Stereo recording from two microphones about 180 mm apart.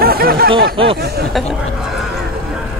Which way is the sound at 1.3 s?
Centre (ahead or behind).